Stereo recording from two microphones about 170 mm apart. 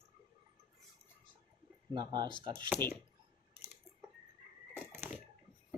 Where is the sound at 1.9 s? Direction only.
25° right (ahead or behind).